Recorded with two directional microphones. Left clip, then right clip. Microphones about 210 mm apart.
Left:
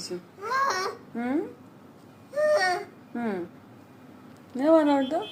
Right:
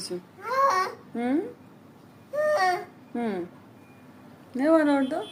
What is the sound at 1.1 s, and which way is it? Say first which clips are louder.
Speech: right 3 dB; 20° right (ahead or behind).